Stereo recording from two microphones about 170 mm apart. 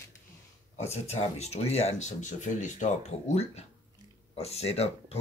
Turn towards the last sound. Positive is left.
turn(degrees=35)  # may be behind; listen again after turning